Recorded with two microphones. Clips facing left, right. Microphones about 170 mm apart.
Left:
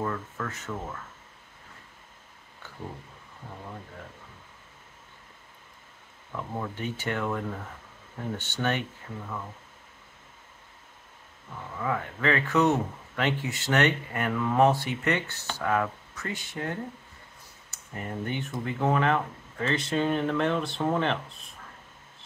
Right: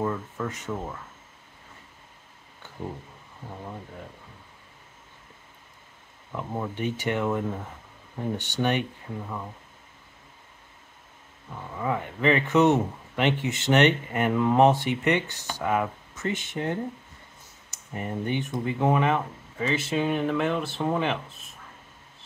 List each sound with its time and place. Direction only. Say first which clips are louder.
0.0 s speech: right 3 dB; 15° right (ahead or behind)
6.3 s speech: right 3 dB; 15° right (ahead or behind)
11.8 s speech: right 3 dB; 15° right (ahead or behind)
17.6 s clicking: right 4 dB; 15° right (ahead or behind)
18.2 s speech: right 4 dB; 20° right (ahead or behind)